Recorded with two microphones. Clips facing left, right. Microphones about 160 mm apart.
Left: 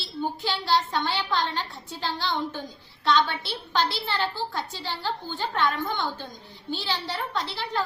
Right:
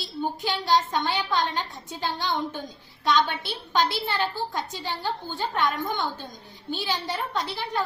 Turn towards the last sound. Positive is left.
turn(degrees=-15)  # may be behind; listen again after turning